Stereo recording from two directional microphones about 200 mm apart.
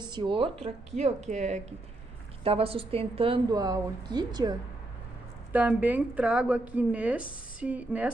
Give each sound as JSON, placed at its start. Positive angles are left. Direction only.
{"t": 0.0, "sound": "a woman's voice", "side_deg": -25}
{"t": 5.5, "sound": "speech", "side_deg": -10}